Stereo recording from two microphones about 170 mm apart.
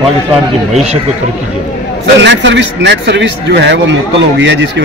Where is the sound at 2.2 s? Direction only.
90° right.